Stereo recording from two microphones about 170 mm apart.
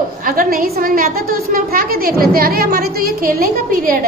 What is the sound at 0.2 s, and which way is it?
A woman's voice, 55° right (ahead or behind).